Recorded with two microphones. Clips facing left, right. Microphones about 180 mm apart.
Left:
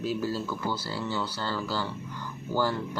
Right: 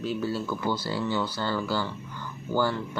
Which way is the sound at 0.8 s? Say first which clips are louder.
Right 4 dB; 20° right (ahead or behind).